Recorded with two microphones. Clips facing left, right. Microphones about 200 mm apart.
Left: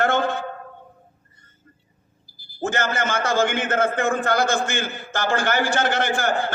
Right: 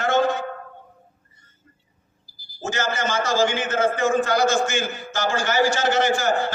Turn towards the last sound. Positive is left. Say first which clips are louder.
# right 2 dB
turn(degrees=55)  # may be behind; listen again after turning